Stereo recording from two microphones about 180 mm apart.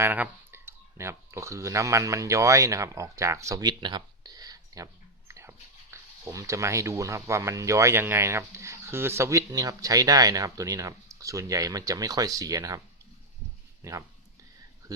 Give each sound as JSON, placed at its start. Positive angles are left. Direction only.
{"t": 0.0, "sound": "speech", "side_deg": -10}
{"t": 13.8, "sound": "speech", "side_deg": -15}